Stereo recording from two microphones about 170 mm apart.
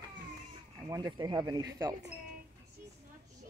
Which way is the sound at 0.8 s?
25° right (ahead or behind).